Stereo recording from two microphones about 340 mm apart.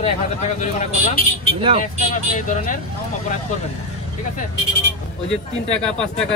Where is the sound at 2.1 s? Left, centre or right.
Left.